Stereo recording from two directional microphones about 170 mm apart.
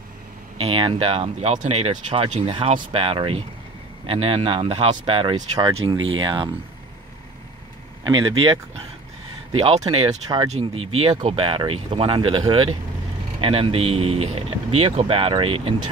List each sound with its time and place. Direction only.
0.6 s speech: 30° right (ahead or behind)
8.0 s speech: 30° right (ahead or behind)
10.5 s speech: 35° right (ahead or behind)